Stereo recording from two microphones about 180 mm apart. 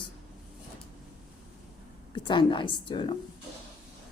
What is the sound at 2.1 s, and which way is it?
A woman's voice, 25° left (ahead or behind).